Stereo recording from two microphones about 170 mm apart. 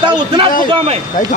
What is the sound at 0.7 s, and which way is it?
Speech, 35° right (ahead or behind).